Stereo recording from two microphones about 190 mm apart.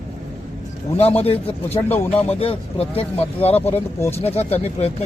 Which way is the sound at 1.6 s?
10° left (ahead or behind).